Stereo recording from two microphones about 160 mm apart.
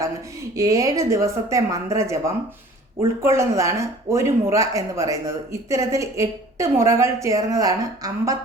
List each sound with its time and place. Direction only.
0.5 s speech: 20° right (ahead or behind)